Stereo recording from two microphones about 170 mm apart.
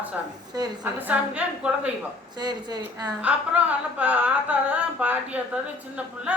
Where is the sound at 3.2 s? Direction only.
10° right (ahead or behind).